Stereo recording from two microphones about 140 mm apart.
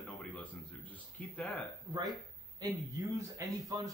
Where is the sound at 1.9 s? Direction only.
30° right (ahead or behind).